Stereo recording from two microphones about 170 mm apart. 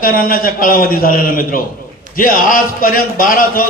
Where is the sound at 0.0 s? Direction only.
55° left (ahead or behind).